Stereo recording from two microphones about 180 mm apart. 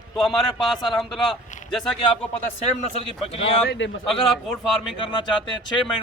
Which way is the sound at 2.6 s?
35° left (ahead or behind).